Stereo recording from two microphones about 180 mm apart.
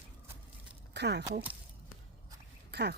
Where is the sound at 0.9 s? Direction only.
70° right (ahead or behind).